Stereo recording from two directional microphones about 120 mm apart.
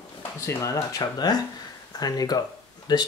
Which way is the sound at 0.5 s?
25° left (ahead or behind).